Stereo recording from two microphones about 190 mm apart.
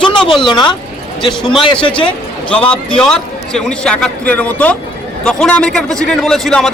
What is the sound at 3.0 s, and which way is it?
A man's voice, 5° left (ahead or behind).